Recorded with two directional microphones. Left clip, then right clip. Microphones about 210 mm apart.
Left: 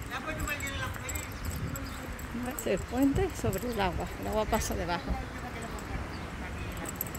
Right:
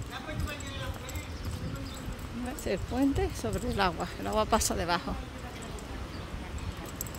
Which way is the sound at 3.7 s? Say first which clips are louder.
Right 2 dB; 20° right (ahead or behind).